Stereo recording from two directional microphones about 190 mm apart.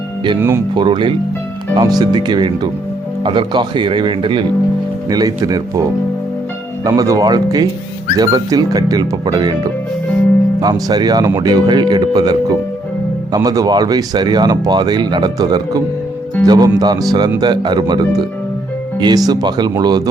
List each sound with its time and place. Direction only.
0.3 s speech: 10° right (ahead or behind)
0.7 s speech: 25° right (ahead or behind)
6.8 s speech: 20° right (ahead or behind)
10.6 s speech: 20° right (ahead or behind)